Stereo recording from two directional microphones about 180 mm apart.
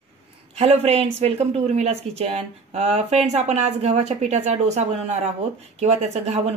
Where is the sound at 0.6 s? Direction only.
35° right (ahead or behind).